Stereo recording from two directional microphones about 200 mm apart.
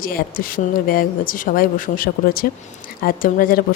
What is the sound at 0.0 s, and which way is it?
Speech, 45° left (ahead or behind).